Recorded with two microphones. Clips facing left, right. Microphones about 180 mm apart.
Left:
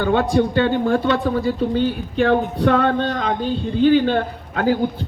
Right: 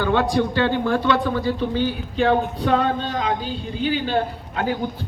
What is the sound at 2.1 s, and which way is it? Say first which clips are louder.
A man's voice: left 2 dB; 55° left (ahead or behind).